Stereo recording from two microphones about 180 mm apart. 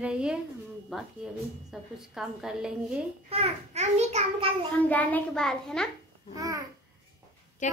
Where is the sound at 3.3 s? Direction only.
35° right (ahead or behind).